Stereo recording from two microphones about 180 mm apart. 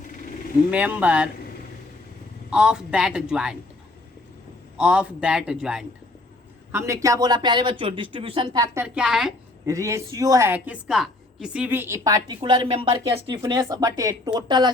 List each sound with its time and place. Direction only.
0.1 s vehicle: 50° left (ahead or behind)
0.7 s speech: 10° right (ahead or behind)
2.5 s a man's voice: 5° right (ahead or behind)
4.8 s a man's voice: 5° right (ahead or behind)
9.0 s a man's voice: centre (ahead or behind)
9.6 s a woman's voice: 15° right (ahead or behind)